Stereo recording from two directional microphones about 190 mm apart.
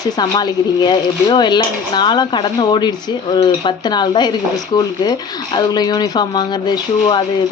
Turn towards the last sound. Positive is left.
turn(degrees=25)  # may be behind; listen again after turning